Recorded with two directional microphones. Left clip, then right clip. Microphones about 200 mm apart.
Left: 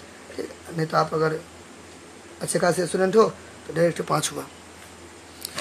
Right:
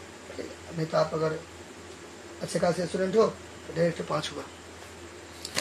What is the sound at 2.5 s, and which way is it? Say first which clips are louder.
Speech: left 5 dB; 45° left (ahead or behind).